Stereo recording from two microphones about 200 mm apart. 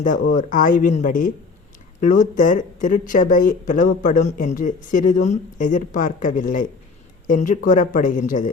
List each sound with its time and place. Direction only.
0.0 s speech: 40° left (ahead or behind)